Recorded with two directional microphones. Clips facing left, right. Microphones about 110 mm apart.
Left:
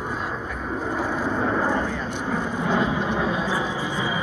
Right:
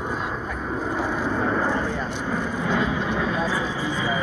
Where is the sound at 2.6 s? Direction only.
25° left (ahead or behind).